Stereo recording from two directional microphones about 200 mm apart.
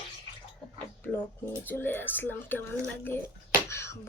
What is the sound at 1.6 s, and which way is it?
Speech, 10° left (ahead or behind).